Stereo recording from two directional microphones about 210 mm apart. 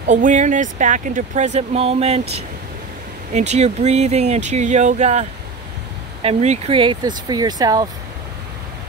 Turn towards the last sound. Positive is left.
turn(degrees=-20)  # may be behind; listen again after turning